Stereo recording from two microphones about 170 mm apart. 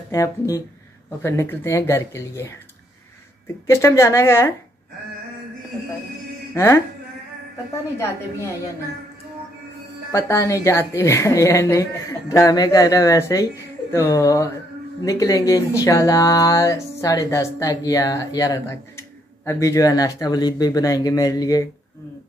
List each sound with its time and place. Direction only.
0.1 s a woman's voice: 20° left (ahead or behind)
3.6 s a woman's voice: 15° left (ahead or behind)
6.5 s speech: 15° left (ahead or behind)
10.1 s a woman's voice: 15° left (ahead or behind)